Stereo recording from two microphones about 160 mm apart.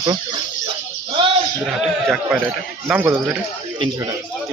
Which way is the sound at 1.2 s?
30° right (ahead or behind).